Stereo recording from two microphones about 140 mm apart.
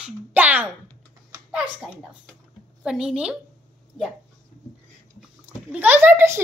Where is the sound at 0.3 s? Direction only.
10° right (ahead or behind).